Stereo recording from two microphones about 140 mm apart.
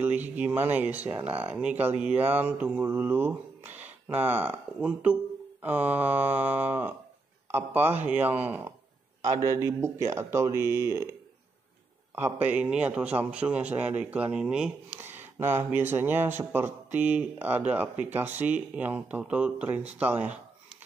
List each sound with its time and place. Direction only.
0.0 s speech: 10° right (ahead or behind)
9.2 s speech: 25° right (ahead or behind)
12.2 s speech: 15° right (ahead or behind)